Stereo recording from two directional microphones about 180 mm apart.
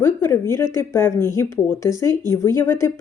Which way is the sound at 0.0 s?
15° left (ahead or behind).